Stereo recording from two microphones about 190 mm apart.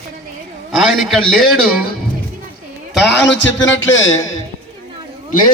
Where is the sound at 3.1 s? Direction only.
70° left (ahead or behind).